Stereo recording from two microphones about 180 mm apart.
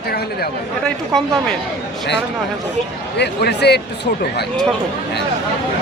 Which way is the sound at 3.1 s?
70° left (ahead or behind).